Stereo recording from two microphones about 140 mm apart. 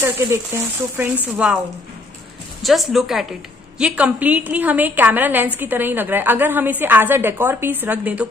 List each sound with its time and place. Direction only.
0.0 s speech: 20° right (ahead or behind)
1.3 s a woman's voice: 10° right (ahead or behind)
2.6 s a woman's voice: centre (ahead or behind)